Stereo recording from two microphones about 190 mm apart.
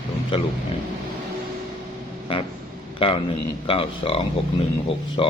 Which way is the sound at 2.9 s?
30° left (ahead or behind).